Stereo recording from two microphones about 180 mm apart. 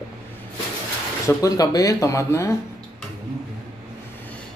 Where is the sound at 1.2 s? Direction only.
20° left (ahead or behind).